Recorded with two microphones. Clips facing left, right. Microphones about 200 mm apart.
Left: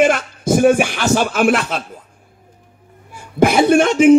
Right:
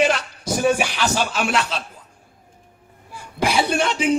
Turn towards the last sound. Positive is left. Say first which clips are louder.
# left 11 dB
turn(degrees=50)  # may be behind; listen again after turning